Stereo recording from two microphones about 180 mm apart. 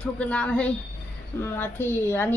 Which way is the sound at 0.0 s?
5° left (ahead or behind).